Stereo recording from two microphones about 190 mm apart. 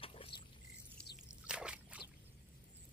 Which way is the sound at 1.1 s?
5° right (ahead or behind).